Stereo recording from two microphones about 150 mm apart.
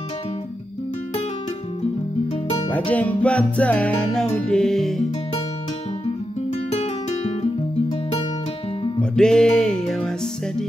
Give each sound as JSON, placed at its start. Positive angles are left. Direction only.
{"t": 2.7, "sound": "music", "side_deg": 10}
{"t": 6.0, "sound": "music", "side_deg": 45}
{"t": 9.1, "sound": "music", "side_deg": 5}